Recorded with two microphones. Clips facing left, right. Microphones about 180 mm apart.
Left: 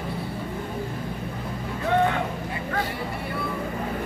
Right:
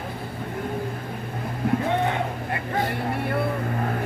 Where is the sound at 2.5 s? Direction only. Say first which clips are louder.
Right 2 dB; 60° right (ahead or behind).